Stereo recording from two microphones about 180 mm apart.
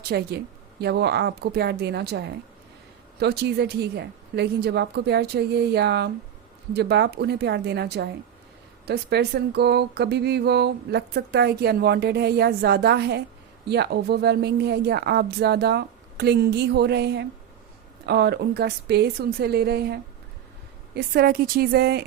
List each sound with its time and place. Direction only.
0.1 s speech: 65° right (ahead or behind)